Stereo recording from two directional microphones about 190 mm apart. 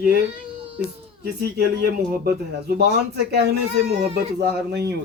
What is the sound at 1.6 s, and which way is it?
A man's voice, 55° right (ahead or behind).